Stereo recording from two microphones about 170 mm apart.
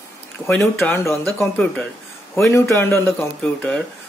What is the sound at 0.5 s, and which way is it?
Speech, 10° left (ahead or behind).